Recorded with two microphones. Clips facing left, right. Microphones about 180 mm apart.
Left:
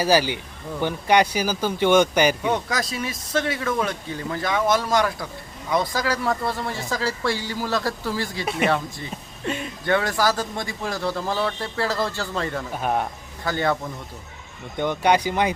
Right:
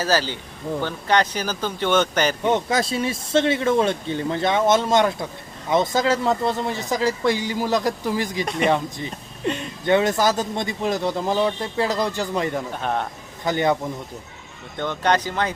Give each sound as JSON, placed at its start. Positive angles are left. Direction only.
{"t": 0.0, "sound": "speech", "side_deg": 15}
{"t": 2.5, "sound": "speech", "side_deg": -25}
{"t": 8.4, "sound": "speech", "side_deg": 5}
{"t": 9.8, "sound": "speech", "side_deg": -20}
{"t": 12.7, "sound": "speech", "side_deg": 10}
{"t": 13.4, "sound": "speech", "side_deg": -20}
{"t": 14.8, "sound": "speech", "side_deg": 10}